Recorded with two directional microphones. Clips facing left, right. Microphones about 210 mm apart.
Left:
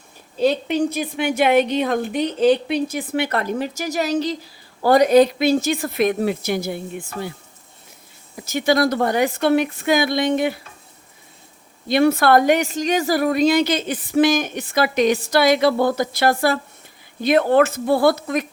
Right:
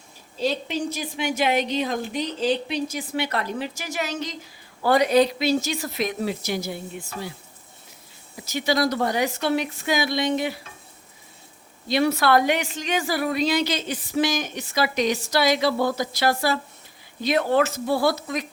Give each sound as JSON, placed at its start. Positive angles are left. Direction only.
{"t": 0.3, "sound": "a woman's voice", "side_deg": 55}
{"t": 8.4, "sound": "a woman's voice", "side_deg": 50}
{"t": 11.9, "sound": "a woman's voice", "side_deg": 50}